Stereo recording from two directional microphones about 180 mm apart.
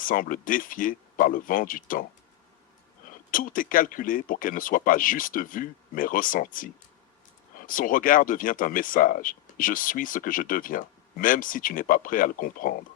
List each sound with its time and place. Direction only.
0.0 s speech: 50° left (ahead or behind)
3.3 s speech: 50° left (ahead or behind)
7.7 s speech: 50° left (ahead or behind)